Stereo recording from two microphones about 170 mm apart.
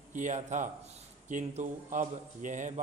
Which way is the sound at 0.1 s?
45° right (ahead or behind).